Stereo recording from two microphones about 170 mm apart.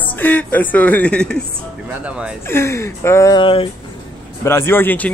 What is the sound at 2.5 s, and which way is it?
Speech, 15° left (ahead or behind).